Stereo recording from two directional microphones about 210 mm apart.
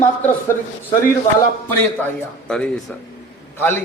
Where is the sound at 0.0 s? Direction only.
10° left (ahead or behind).